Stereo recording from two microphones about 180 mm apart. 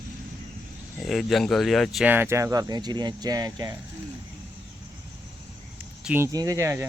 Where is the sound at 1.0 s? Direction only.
Centre (ahead or behind); by 3.7 s 20° right (ahead or behind).